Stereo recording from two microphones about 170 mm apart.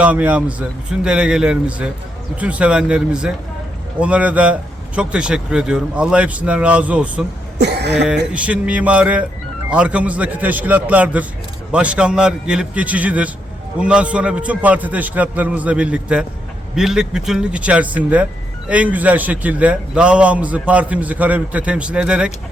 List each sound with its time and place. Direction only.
0.0 s a man's voice: 10° right (ahead or behind)
7.6 s speech: 80° right
8.3 s a man's voice: 5° right (ahead or behind)